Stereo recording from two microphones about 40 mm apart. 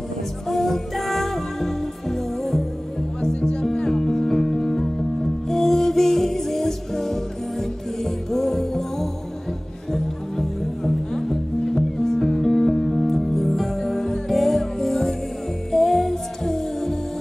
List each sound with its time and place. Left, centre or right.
0.5 s music: centre
3.2 s music: centre